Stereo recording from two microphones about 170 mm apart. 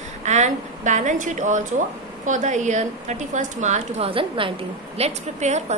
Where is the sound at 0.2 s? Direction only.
40° right (ahead or behind).